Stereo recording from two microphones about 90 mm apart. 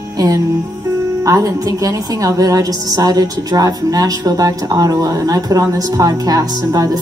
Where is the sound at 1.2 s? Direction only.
40° right (ahead or behind).